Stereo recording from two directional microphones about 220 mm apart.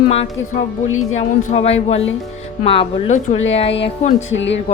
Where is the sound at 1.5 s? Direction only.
30° left (ahead or behind).